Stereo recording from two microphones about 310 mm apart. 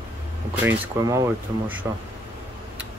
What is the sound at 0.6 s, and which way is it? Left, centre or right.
Speech, centre.